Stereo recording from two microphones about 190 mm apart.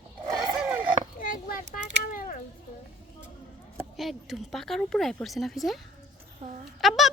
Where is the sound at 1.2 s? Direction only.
45° left (ahead or behind).